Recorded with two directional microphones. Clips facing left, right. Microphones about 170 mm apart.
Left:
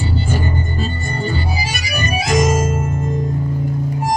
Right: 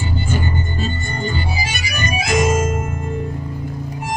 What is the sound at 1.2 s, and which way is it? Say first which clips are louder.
Organ: left 1 dB; 40° left (ahead or behind).